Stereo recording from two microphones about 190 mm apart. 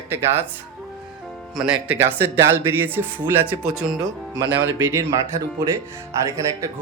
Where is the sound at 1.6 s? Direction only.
5° right (ahead or behind).